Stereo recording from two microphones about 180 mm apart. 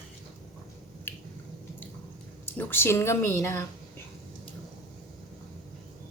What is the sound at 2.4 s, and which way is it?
A woman's voice, 10° left (ahead or behind).